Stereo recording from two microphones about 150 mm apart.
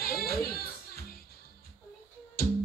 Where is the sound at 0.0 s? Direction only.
90° left.